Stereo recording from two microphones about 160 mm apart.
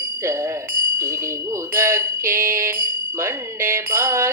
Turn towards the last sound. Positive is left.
turn(degrees=-15)  # may be behind; listen again after turning